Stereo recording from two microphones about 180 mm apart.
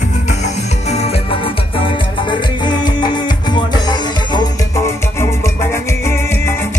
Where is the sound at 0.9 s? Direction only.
30° left (ahead or behind).